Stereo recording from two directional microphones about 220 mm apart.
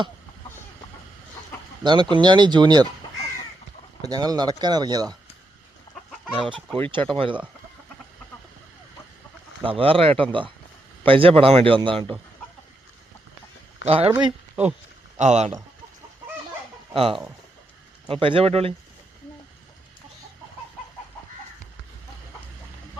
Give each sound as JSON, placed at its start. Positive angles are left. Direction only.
{"t": 1.8, "sound": "a man's voice", "side_deg": -20}
{"t": 4.0, "sound": "a man's voice", "side_deg": -15}
{"t": 6.1, "sound": "chicken", "side_deg": 0}
{"t": 7.2, "sound": "a man's voice", "side_deg": -20}
{"t": 9.6, "sound": "a man's voice", "side_deg": -25}
{"t": 13.8, "sound": "a man's voice", "side_deg": -25}
{"t": 14.3, "sound": "speech", "side_deg": -5}
{"t": 15.2, "sound": "speech", "side_deg": -30}
{"t": 16.9, "sound": "a man's voice", "side_deg": -25}